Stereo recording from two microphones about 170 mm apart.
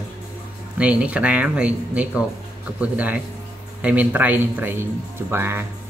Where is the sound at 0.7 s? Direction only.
10° right (ahead or behind).